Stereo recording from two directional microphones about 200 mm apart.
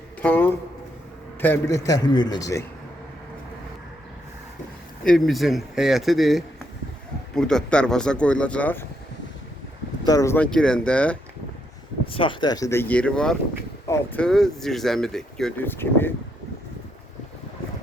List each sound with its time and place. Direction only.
0.2 s a sound: 10° left (ahead or behind)
1.4 s a man's voice: 10° left (ahead or behind)
5.0 s speech: centre (ahead or behind)
10.1 s a man's voice: 15° left (ahead or behind)
12.1 s a man's voice: 25° left (ahead or behind)